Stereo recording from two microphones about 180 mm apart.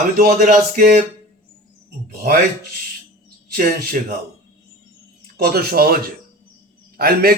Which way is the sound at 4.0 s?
45° right (ahead or behind).